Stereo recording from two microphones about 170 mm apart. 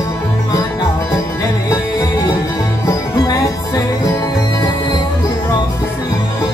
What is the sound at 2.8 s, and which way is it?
Music, 20° left (ahead or behind).